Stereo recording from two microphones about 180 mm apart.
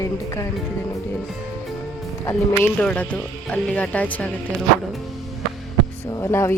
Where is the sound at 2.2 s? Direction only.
15° left (ahead or behind).